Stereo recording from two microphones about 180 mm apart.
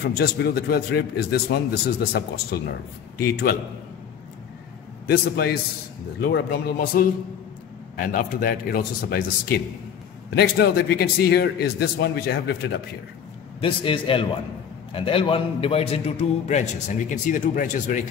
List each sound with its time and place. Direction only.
0.0 s a man's voice: 60° left (ahead or behind)
5.0 s a man's voice: 55° left (ahead or behind)
13.6 s a man's voice: 30° left (ahead or behind); by 18.0 s 45° left (ahead or behind)